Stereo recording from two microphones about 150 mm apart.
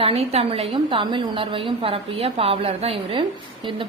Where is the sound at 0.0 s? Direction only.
40° right (ahead or behind).